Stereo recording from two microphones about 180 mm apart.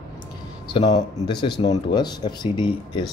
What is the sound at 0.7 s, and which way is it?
Speech, 25° left (ahead or behind).